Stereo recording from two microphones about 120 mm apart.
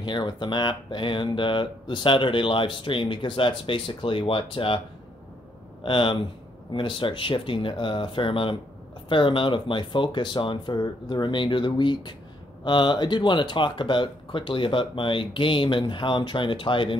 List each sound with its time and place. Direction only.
0.0 s speech: 40° left (ahead or behind)
5.9 s speech: 45° left (ahead or behind)